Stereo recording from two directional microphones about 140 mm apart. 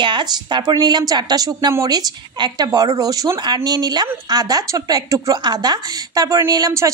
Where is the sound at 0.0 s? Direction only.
35° right (ahead or behind).